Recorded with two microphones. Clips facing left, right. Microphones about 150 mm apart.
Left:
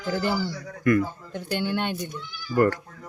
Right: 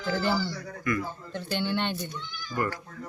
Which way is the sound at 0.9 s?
60° left (ahead or behind).